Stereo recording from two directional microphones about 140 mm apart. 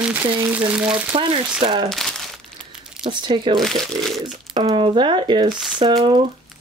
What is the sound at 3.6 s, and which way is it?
Speech, centre (ahead or behind).